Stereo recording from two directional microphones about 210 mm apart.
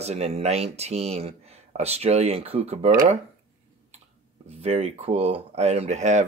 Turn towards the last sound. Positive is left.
turn(degrees=-35)  # may be behind; listen again after turning